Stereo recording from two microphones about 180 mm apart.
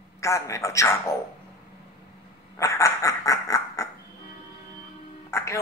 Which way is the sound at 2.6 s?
15° left (ahead or behind).